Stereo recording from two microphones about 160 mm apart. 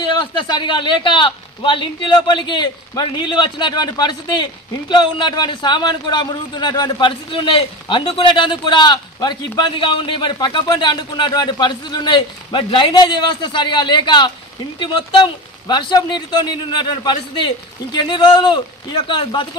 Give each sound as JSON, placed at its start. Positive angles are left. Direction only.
{"t": 0.0, "sound": "a man's voice", "side_deg": 30}